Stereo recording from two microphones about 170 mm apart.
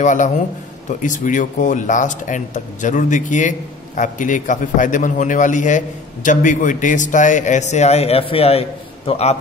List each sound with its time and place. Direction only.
0.0 s speech: 50° left (ahead or behind)